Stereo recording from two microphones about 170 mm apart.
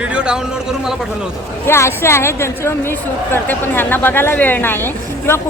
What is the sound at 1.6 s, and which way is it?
Speech, 15° left (ahead or behind).